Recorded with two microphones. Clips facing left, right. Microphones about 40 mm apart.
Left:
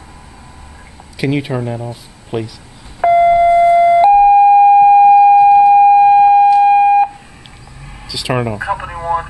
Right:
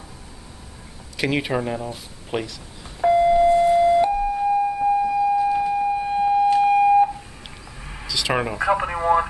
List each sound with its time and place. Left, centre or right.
1.1 s speech: centre
3.0 s beep: left
4.0 s siren: left
6.1 s siren: left
8.1 s speech: centre